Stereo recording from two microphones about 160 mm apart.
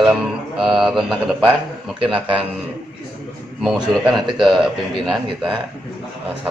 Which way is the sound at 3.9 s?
Centre (ahead or behind).